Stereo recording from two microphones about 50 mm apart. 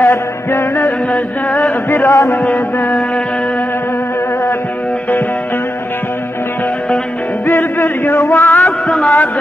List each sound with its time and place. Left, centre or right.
0.0 s music: left
1.1 s mantra: left
1.9 s mantra: left
2.4 s mantra: left
7.4 s music: left